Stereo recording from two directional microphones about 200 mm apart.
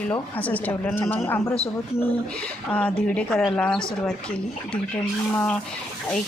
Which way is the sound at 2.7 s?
10° left (ahead or behind).